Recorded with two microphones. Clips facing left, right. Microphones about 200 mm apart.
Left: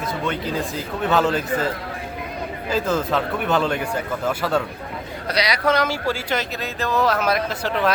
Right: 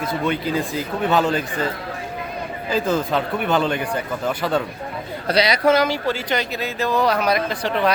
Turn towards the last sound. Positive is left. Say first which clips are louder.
# right 1 dB
turn(degrees=0)  # may be behind; listen again after turning